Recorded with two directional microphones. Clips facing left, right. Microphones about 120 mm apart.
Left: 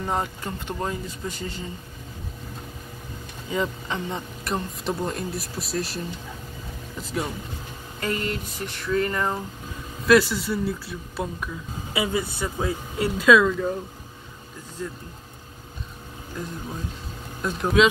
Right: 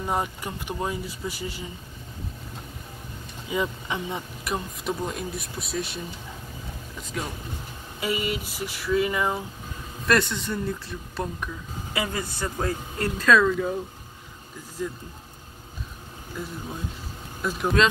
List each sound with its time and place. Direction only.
0.0 s speech: 15° right (ahead or behind)
3.5 s speech: 10° right (ahead or behind)
10.0 s speech: 5° left (ahead or behind)
11.9 s speech: 15° left (ahead or behind); by 13.7 s centre (ahead or behind)
16.4 s speech: centre (ahead or behind)